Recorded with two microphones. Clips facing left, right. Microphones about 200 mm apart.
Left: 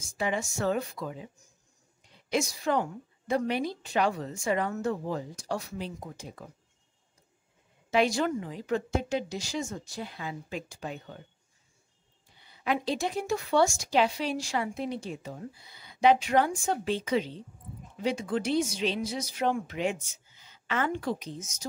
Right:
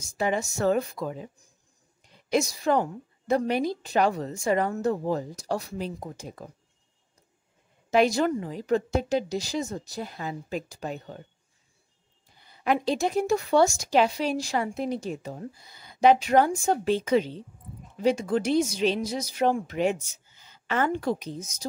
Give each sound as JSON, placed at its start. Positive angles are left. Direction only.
{"t": 0.0, "sound": "a woman's voice", "side_deg": -40}
{"t": 7.9, "sound": "a woman's voice", "side_deg": -40}
{"t": 12.4, "sound": "a woman's voice", "side_deg": -45}